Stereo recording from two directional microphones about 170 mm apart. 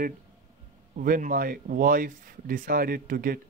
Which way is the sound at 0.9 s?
55° right (ahead or behind).